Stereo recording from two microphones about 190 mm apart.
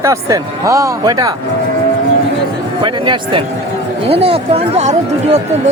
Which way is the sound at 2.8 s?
25° right (ahead or behind).